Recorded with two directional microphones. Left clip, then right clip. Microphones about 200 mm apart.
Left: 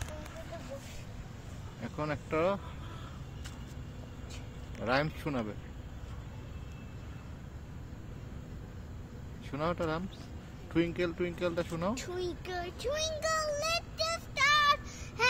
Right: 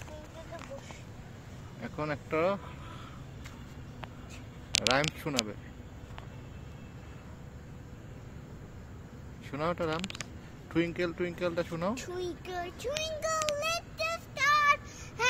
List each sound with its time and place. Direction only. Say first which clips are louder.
1.8 s speech: right 1 dB; centre (ahead or behind)
4.8 s speech: even; 5° right (ahead or behind)
9.5 s speech: right 1 dB; centre (ahead or behind)